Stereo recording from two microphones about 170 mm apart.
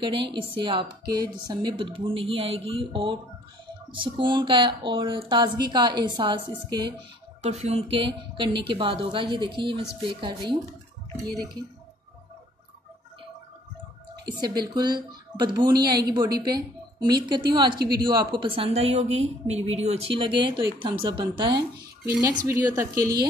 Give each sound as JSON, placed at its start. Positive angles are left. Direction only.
{"t": 0.0, "sound": "a woman's voice", "side_deg": -30}
{"t": 7.4, "sound": "a woman's voice", "side_deg": -40}
{"t": 14.6, "sound": "a woman's voice", "side_deg": -25}